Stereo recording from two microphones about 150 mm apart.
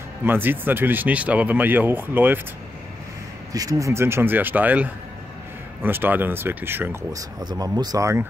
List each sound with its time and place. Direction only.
0.2 s speech: 15° right (ahead or behind)
3.5 s speech: 25° right (ahead or behind)